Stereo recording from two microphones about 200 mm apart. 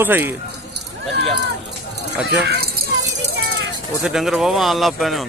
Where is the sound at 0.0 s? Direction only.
10° right (ahead or behind).